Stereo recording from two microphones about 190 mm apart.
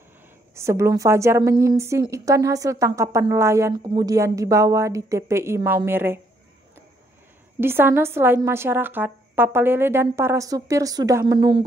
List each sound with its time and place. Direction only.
0.6 s a woman's voice: 15° right (ahead or behind)
7.6 s a woman's voice: 10° right (ahead or behind)